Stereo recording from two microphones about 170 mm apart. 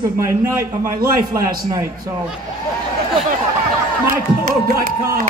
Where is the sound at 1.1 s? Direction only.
20° right (ahead or behind).